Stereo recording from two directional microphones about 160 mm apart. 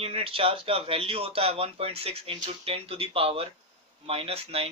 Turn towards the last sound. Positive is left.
turn(degrees=-40)  # may be behind; listen again after turning